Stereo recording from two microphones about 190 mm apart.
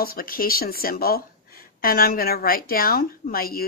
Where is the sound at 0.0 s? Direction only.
50° left (ahead or behind).